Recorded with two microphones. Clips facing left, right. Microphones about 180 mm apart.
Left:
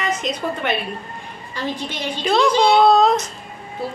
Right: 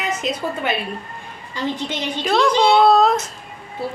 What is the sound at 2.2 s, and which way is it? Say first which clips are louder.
Speech: even; centre (ahead or behind).